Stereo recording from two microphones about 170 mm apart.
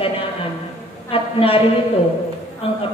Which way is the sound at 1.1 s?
35° left (ahead or behind).